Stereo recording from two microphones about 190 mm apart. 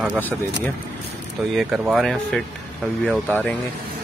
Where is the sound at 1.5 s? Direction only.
Centre (ahead or behind).